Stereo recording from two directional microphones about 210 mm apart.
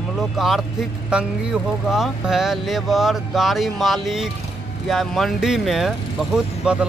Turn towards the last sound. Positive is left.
turn(degrees=-5)  # may be behind; listen again after turning